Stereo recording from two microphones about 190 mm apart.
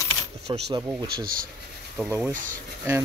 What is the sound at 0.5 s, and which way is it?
Speech, 25° right (ahead or behind).